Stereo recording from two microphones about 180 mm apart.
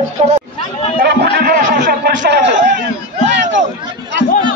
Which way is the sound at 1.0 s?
55° right (ahead or behind).